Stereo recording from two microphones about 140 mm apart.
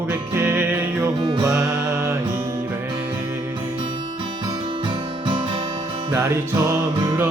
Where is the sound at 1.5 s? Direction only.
5° right (ahead or behind).